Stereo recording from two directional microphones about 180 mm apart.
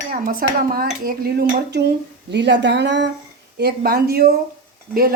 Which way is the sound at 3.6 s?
55° right (ahead or behind).